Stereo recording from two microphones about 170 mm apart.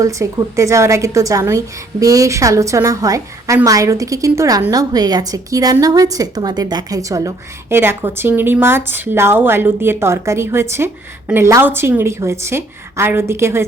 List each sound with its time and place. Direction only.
0.0 s a woman's voice: 20° right (ahead or behind)